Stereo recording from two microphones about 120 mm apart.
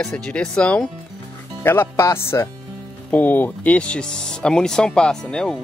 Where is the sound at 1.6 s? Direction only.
20° left (ahead or behind).